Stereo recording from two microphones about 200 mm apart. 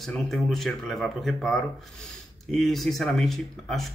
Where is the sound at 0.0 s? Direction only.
Centre (ahead or behind).